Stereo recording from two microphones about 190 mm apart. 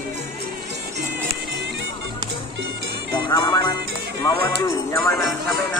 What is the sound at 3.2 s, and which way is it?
Music, 20° left (ahead or behind).